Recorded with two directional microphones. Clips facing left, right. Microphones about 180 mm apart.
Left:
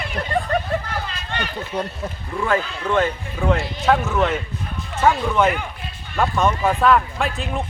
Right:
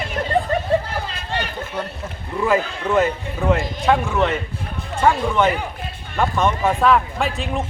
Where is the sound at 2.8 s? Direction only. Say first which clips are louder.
Right 2 dB; 5° right (ahead or behind).